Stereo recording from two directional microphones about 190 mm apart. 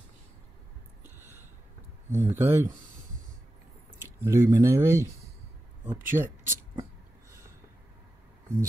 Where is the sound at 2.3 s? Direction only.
10° right (ahead or behind).